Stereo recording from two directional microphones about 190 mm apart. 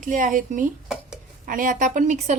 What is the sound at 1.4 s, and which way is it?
Speech, 45° right (ahead or behind).